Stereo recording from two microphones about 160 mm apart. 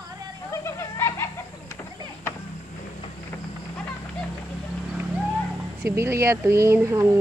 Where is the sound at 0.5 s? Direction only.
20° left (ahead or behind).